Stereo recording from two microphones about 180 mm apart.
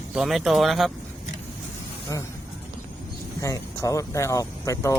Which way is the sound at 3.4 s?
15° left (ahead or behind).